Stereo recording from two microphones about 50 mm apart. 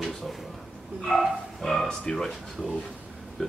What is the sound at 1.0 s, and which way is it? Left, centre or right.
Speech, centre.